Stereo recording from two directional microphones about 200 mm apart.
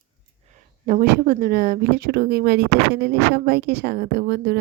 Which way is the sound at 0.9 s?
45° right (ahead or behind).